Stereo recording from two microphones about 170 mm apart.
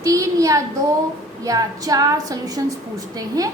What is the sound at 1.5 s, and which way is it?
A woman's voice, 20° right (ahead or behind).